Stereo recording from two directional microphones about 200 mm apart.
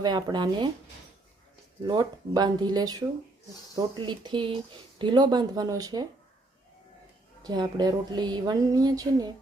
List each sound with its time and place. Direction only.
0.0 s speech: 20° right (ahead or behind)
1.8 s speech: 20° right (ahead or behind)
7.4 s speech: 20° right (ahead or behind)